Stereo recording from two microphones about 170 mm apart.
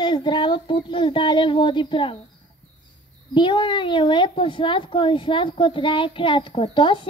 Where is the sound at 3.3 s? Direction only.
30° left (ahead or behind).